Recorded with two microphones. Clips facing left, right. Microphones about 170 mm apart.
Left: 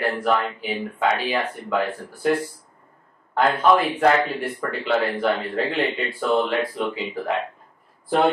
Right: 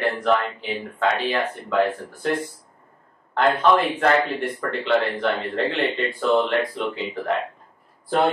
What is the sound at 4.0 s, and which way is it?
Speech, 5° left (ahead or behind).